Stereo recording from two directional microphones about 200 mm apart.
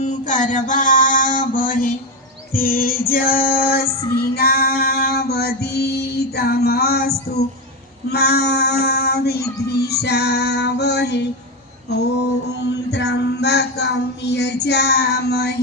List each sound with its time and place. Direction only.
0.0 s a sound: 40° left (ahead or behind)
2.5 s female singing: 45° left (ahead or behind)
8.1 s child singing: 55° left (ahead or behind)
9.6 s female singing: 55° left (ahead or behind)